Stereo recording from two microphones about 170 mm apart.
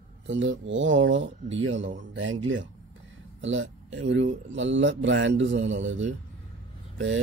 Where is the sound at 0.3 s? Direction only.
90° right.